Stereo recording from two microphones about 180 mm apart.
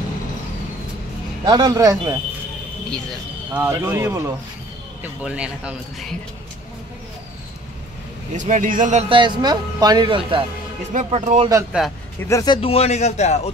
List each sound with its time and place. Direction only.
1.4 s speech: 20° right (ahead or behind)
3.5 s a man's voice: 10° right (ahead or behind)
8.3 s speech: 45° right (ahead or behind)
9.1 s speech: 25° right (ahead or behind)
10.9 s speech: 40° right (ahead or behind)
11.7 s a man's voice: 5° right (ahead or behind)
12.3 s speech: 20° left (ahead or behind)
12.5 s a man's voice: 35° left (ahead or behind)